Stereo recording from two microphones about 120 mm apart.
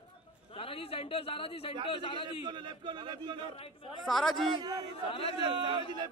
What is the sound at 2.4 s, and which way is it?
Speech, 40° right (ahead or behind).